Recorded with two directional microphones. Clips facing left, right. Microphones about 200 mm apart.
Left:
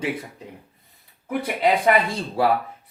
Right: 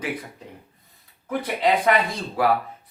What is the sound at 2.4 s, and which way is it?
Speech, 30° left (ahead or behind).